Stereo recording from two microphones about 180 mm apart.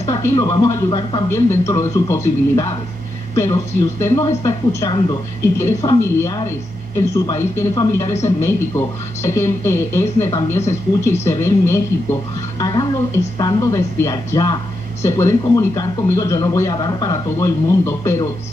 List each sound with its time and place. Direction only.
0.1 s a woman's voice: 15° left (ahead or behind)